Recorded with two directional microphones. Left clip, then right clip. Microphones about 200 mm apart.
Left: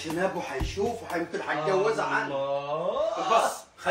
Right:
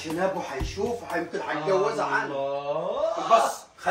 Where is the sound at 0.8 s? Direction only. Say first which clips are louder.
Even; 15° left (ahead or behind).